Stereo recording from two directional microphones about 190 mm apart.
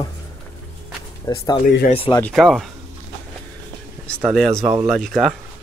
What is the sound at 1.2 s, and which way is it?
Speech, 20° left (ahead or behind).